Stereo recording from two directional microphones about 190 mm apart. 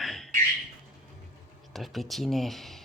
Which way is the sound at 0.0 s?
Centre (ahead or behind).